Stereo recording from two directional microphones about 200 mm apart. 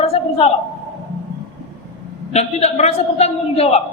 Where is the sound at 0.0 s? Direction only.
30° left (ahead or behind).